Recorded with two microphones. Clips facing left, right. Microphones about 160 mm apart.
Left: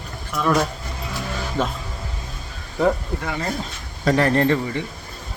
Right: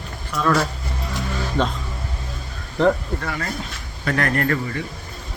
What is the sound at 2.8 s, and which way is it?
Speech, 10° left (ahead or behind).